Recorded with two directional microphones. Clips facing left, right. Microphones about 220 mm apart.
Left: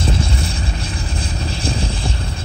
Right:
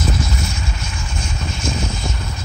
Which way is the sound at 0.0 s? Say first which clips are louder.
Left 1 dB; 30° left (ahead or behind).